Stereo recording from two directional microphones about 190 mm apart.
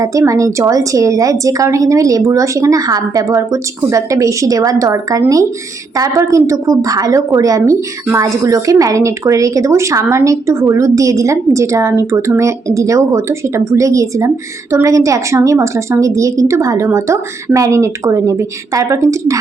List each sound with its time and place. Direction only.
0.0 s a woman's voice: 15° right (ahead or behind)